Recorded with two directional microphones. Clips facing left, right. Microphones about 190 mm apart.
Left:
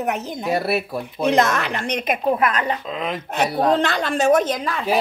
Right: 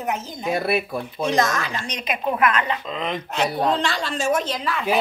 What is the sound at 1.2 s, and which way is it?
Speech, 65° left (ahead or behind).